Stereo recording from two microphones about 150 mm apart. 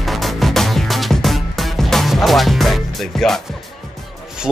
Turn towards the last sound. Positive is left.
turn(degrees=0)  # may be behind; listen again after turning